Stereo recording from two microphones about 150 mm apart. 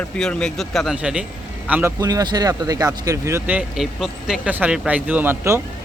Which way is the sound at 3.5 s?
5° right (ahead or behind).